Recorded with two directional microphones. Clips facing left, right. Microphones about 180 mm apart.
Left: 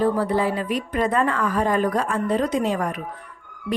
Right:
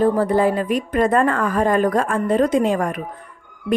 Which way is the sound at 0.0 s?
50° right (ahead or behind).